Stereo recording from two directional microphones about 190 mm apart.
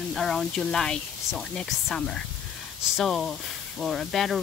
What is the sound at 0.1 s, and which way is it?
Speech, centre (ahead or behind).